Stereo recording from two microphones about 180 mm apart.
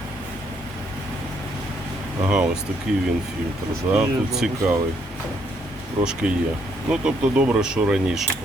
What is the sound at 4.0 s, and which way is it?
Speech, 5° right (ahead or behind).